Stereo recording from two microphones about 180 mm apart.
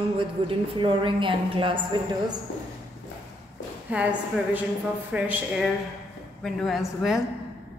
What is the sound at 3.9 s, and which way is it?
Speech, 10° right (ahead or behind).